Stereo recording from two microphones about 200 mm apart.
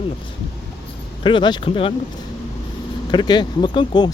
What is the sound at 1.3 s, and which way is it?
Speech, 25° left (ahead or behind).